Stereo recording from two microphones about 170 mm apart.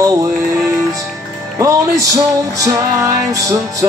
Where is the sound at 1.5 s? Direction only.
20° right (ahead or behind).